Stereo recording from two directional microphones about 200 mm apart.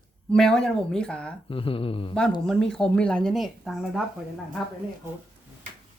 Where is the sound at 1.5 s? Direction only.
25° left (ahead or behind).